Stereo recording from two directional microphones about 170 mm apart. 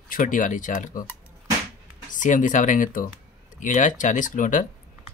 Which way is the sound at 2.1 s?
50° left (ahead or behind).